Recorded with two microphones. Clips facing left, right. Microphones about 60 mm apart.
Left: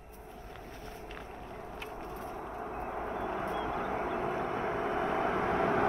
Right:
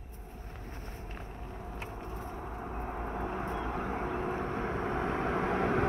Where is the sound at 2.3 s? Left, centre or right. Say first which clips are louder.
Left 1 dB; left.